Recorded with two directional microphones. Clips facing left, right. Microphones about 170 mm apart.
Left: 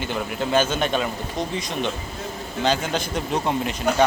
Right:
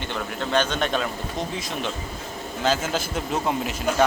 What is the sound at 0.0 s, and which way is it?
Speech, 5° left (ahead or behind).